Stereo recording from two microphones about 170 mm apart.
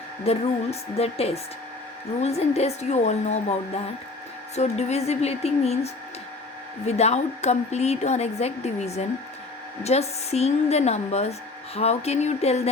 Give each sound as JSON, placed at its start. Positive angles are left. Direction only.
{"t": 0.3, "sound": "speech", "side_deg": 35}
{"t": 4.5, "sound": "speech", "side_deg": 40}